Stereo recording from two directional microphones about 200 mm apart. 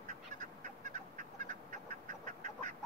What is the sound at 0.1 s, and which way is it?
Duck, 40° right (ahead or behind).